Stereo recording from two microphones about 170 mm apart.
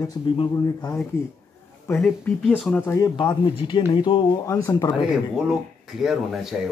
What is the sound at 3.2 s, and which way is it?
Speech, 30° left (ahead or behind).